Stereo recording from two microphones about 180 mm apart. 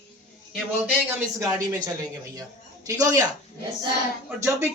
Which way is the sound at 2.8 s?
20° right (ahead or behind).